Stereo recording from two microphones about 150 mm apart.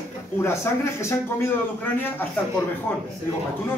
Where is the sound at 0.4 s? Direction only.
15° left (ahead or behind).